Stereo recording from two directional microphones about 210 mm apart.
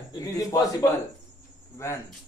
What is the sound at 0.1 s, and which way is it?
Speech, 15° left (ahead or behind).